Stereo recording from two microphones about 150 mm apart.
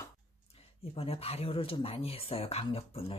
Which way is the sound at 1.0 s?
40° left (ahead or behind).